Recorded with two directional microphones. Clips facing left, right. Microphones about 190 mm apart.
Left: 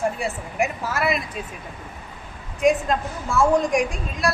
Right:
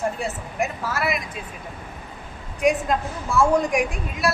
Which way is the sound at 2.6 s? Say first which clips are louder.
Left 1 dB; centre (ahead or behind).